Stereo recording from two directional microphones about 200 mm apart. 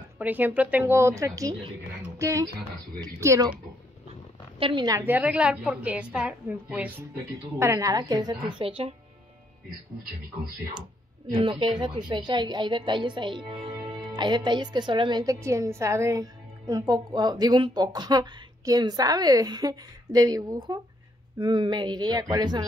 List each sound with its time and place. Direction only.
0.2 s a woman's voice: 10° right (ahead or behind)
4.6 s a woman's voice: 25° right (ahead or behind)
11.3 s a woman's voice: 20° right (ahead or behind)